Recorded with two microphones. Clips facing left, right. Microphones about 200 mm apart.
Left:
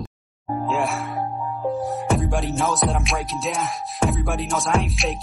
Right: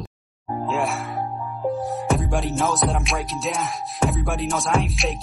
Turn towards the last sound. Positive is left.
turn(degrees=0)  # may be behind; listen again after turning